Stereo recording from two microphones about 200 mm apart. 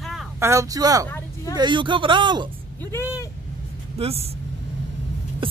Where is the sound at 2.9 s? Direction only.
15° left (ahead or behind).